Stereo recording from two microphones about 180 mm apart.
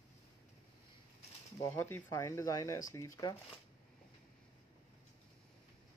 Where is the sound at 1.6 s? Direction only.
10° left (ahead or behind).